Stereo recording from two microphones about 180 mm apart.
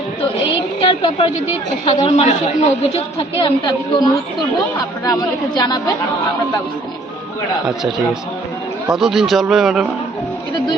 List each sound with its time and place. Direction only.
0.8 s a woman's voice: 30° left (ahead or behind)
8.9 s a man's voice: centre (ahead or behind)